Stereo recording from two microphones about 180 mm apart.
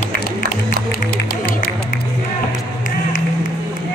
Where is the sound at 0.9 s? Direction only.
55° left (ahead or behind).